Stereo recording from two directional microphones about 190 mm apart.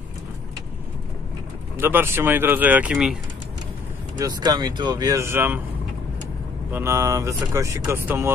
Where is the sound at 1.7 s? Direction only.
10° right (ahead or behind).